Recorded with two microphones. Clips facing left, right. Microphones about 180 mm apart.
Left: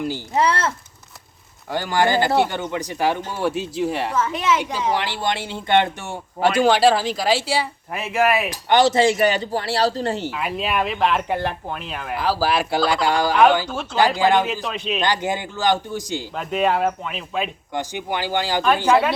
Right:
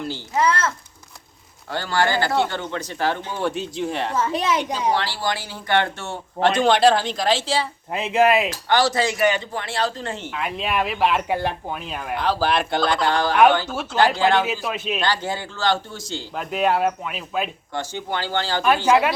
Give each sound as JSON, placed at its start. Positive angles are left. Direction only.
{"t": 0.3, "sound": "speech", "side_deg": 30}
{"t": 1.7, "sound": "speech", "side_deg": 15}
{"t": 4.2, "sound": "a woman's voice", "side_deg": -35}
{"t": 4.9, "sound": "speech", "side_deg": 20}
{"t": 7.9, "sound": "speech", "side_deg": -20}
{"t": 8.4, "sound": "speech", "side_deg": 20}
{"t": 10.3, "sound": "speech", "side_deg": 0}
{"t": 12.1, "sound": "speech", "side_deg": 5}
{"t": 14.4, "sound": "speech", "side_deg": -5}
{"t": 15.0, "sound": "speech", "side_deg": 20}
{"t": 16.3, "sound": "speech", "side_deg": 0}
{"t": 17.7, "sound": "speech", "side_deg": 15}
{"t": 18.9, "sound": "speech", "side_deg": -10}